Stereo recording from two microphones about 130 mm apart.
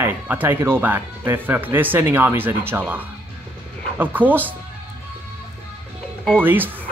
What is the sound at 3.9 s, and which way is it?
Speech, 15° right (ahead or behind).